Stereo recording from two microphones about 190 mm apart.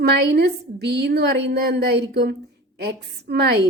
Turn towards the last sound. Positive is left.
turn(degrees=-60)  # may be behind; listen again after turning